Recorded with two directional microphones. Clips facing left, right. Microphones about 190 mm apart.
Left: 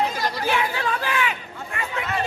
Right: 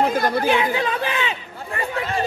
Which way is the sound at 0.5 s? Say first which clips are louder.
Right 4 dB; 20° right (ahead or behind).